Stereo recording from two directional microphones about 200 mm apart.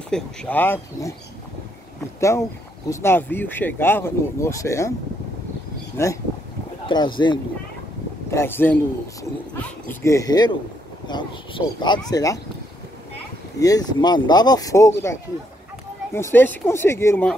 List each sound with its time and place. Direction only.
0.1 s speech: 5° left (ahead or behind)
2.1 s speech: 15° left (ahead or behind)
6.0 s speech: 10° left (ahead or behind)
6.9 s speech: 20° left (ahead or behind)
8.3 s speech: 10° left (ahead or behind)
13.6 s speech: 20° left (ahead or behind)